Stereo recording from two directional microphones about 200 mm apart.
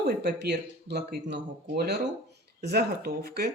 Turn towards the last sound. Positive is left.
turn(degrees=-50)  # may be behind; listen again after turning